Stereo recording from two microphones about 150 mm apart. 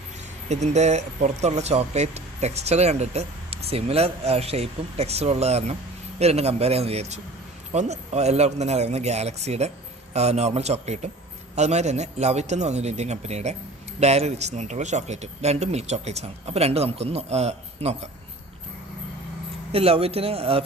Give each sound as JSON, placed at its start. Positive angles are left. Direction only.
{"t": 0.4, "sound": "speech", "side_deg": -50}
{"t": 19.7, "sound": "a man's voice", "side_deg": -40}